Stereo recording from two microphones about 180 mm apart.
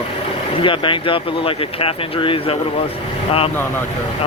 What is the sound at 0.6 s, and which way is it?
Speech, 25° left (ahead or behind).